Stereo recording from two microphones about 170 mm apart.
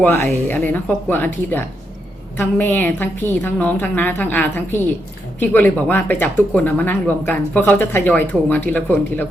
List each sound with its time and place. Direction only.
0.0 s speech: 10° left (ahead or behind)